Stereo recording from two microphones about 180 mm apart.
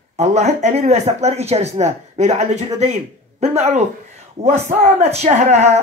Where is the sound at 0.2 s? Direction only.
40° right (ahead or behind).